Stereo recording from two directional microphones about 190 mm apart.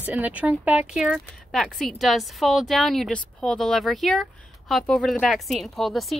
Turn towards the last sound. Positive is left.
turn(degrees=0)  # may be behind; listen again after turning